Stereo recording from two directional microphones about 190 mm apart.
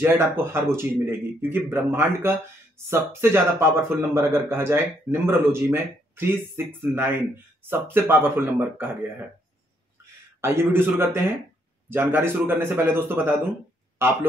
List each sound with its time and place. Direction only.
0.0 s a man's voice: 10° right (ahead or behind)
10.4 s a man's voice: 10° right (ahead or behind)